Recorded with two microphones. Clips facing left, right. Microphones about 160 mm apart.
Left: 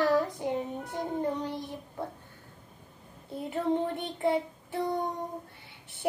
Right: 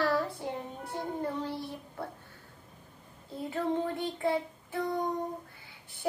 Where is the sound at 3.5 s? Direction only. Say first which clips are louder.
Left 2 dB; 20° left (ahead or behind).